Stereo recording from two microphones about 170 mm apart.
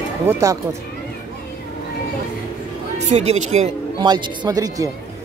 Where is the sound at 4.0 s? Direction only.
25° right (ahead or behind).